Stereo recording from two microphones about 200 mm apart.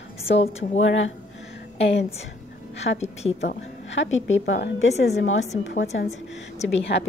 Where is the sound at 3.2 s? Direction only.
30° left (ahead or behind).